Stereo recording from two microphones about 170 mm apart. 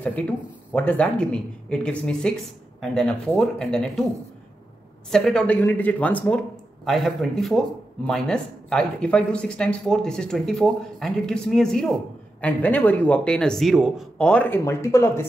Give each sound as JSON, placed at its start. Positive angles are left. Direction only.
{"t": 0.0, "sound": "speech", "side_deg": 10}
{"t": 5.1, "sound": "speech", "side_deg": 5}